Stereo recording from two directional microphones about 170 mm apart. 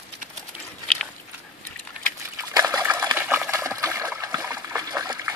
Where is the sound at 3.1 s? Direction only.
10° right (ahead or behind).